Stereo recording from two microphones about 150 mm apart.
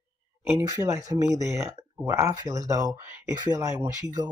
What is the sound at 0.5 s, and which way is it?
Speech, 20° right (ahead or behind).